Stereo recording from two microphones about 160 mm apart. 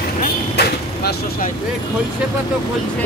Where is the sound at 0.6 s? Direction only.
80° left.